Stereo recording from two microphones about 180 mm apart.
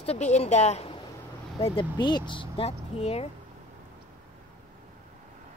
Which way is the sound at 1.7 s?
25° left (ahead or behind).